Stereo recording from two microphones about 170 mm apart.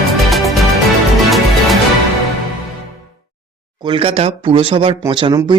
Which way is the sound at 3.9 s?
30° right (ahead or behind).